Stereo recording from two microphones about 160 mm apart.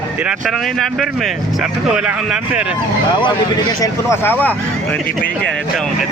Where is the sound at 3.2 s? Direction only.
25° left (ahead or behind).